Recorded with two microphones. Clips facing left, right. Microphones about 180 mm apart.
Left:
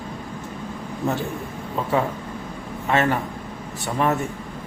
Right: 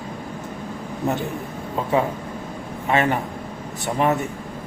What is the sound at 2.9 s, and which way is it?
A man's voice, 15° right (ahead or behind).